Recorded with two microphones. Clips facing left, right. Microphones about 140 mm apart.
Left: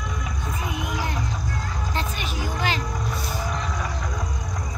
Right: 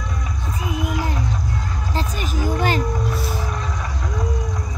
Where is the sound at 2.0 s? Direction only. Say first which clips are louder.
Right 6 dB; 40° right (ahead or behind).